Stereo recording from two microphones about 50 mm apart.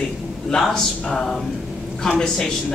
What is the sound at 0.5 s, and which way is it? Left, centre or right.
Speech, centre.